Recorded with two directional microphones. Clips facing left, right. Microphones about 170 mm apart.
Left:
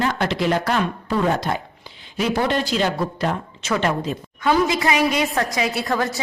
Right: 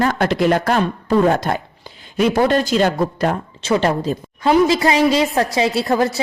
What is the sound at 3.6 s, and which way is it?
A woman's voice, 30° right (ahead or behind).